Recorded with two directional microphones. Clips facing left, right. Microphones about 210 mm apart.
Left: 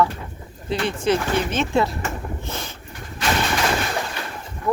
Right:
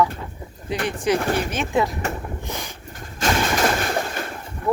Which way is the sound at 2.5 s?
15° right (ahead or behind).